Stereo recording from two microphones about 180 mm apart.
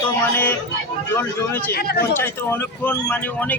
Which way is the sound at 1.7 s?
60° left (ahead or behind).